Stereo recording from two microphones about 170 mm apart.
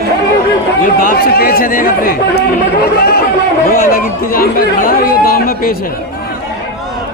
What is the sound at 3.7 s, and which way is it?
Speech, 55° left (ahead or behind).